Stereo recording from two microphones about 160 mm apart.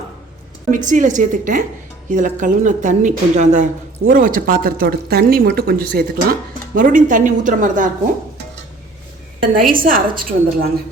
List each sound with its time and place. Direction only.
0.7 s a woman's voice: 50° right (ahead or behind); by 6.1 s 70° right (ahead or behind)
6.7 s a woman's voice: 55° right (ahead or behind)
9.4 s a woman's voice: 60° right (ahead or behind)